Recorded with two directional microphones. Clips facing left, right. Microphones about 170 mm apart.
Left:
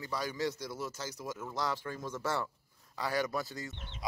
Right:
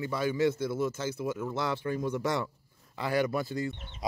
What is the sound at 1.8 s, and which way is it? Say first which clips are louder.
Speech: right 7 dB; 15° right (ahead or behind).